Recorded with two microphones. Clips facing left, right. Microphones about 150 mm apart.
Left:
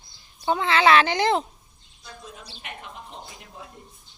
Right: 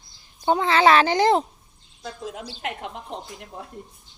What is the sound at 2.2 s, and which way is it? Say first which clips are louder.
Speech: right 11 dB; 90° right.